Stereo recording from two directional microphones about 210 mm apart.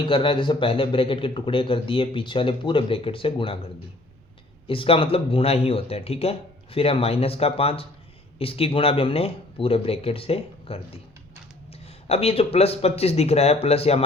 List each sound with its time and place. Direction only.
0.1 s speech: 25° left (ahead or behind)
4.6 s speech: 25° left (ahead or behind)